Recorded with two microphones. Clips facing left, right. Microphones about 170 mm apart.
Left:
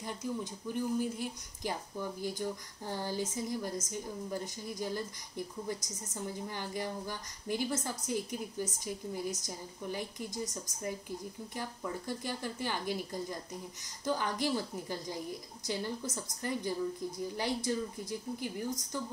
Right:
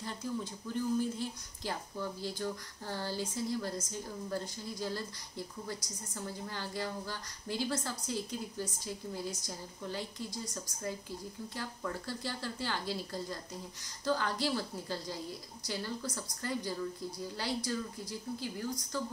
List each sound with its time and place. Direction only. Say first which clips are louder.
0.0 s a woman's voice: left 1 dB; 15° left (ahead or behind)